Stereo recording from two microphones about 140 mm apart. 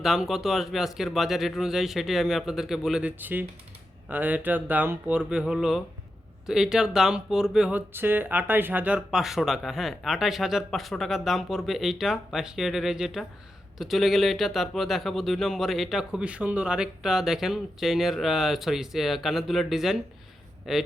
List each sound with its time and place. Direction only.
0.0 s speech: centre (ahead or behind)